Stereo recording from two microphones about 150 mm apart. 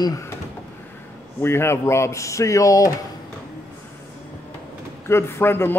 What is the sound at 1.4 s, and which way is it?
A man's voice, 15° left (ahead or behind).